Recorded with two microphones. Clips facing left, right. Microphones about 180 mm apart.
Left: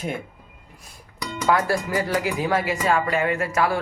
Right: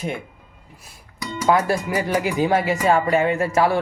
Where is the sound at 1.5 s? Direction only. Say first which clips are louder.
Right 2 dB; 20° right (ahead or behind).